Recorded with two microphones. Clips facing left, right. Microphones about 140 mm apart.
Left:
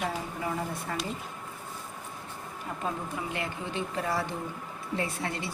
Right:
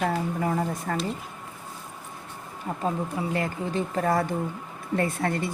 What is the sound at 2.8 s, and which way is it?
Speech, 35° right (ahead or behind).